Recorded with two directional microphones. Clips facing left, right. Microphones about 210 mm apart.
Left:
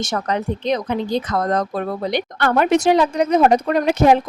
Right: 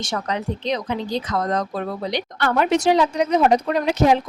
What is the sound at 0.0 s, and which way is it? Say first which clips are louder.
Speech: left 3 dB; 45° left (ahead or behind).